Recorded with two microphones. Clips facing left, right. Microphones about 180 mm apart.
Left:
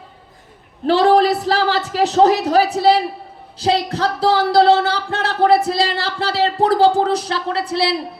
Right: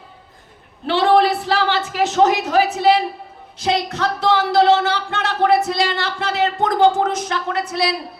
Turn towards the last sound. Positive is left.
turn(degrees=30)  # may be behind; listen again after turning